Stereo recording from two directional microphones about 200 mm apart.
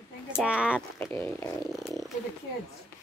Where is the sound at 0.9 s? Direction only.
10° left (ahead or behind).